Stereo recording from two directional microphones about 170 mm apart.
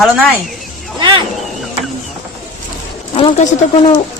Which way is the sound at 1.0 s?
30° right (ahead or behind).